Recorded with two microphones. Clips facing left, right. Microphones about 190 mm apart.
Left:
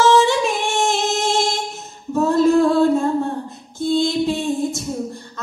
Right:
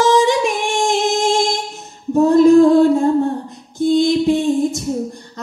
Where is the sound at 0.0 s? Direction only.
15° right (ahead or behind).